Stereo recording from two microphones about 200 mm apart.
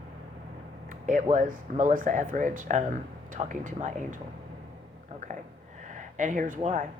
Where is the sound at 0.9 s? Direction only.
40° right (ahead or behind).